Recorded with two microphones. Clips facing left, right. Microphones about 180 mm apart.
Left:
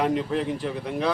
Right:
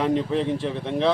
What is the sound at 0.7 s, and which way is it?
Speech, 25° right (ahead or behind).